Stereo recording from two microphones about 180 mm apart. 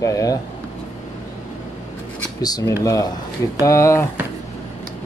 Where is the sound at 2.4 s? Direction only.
20° left (ahead or behind).